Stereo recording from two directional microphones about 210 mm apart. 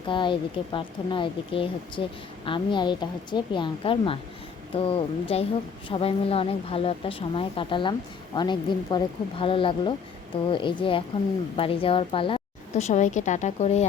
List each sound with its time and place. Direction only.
0.1 s a woman's voice: 25° left (ahead or behind)